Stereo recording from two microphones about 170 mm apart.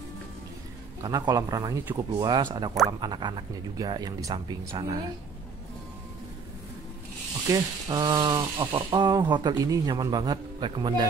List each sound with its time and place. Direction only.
1.0 s speech: 25° right (ahead or behind)
7.4 s speech: 20° right (ahead or behind)